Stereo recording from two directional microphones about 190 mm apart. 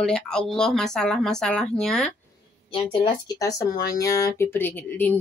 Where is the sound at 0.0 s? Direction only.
5° left (ahead or behind).